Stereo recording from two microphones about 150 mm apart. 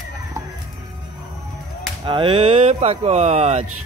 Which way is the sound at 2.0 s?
35° right (ahead or behind).